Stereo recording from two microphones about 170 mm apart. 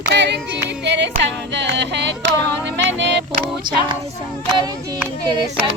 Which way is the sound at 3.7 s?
25° right (ahead or behind).